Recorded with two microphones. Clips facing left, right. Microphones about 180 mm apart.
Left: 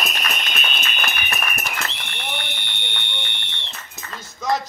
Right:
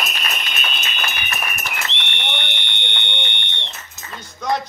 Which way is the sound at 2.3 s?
5° left (ahead or behind).